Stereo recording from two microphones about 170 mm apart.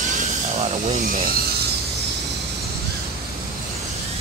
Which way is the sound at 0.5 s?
35° right (ahead or behind).